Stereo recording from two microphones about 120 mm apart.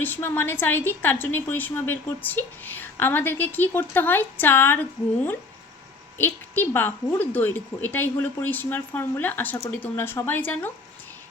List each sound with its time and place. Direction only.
0.0 s a woman's voice: 20° left (ahead or behind)